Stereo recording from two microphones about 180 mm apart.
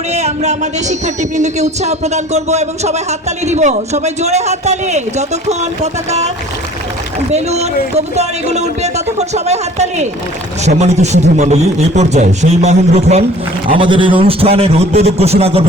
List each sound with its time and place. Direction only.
0.1 s music: 35° right (ahead or behind)
7.3 s music: 35° right (ahead or behind)